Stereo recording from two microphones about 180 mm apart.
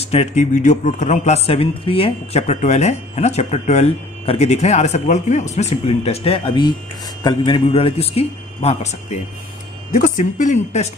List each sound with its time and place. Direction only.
0.0 s a man's voice: 35° left (ahead or behind)